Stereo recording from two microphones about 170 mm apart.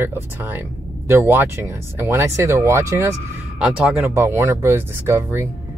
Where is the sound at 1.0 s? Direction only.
15° right (ahead or behind).